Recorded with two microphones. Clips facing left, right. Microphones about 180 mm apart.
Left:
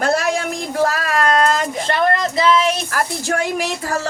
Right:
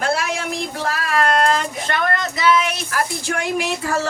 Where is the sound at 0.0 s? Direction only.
45° left (ahead or behind).